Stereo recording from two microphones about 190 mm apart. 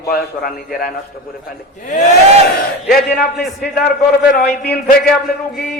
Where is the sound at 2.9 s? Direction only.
55° left (ahead or behind).